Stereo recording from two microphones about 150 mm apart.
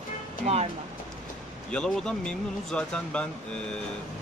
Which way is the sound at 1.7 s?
5° left (ahead or behind).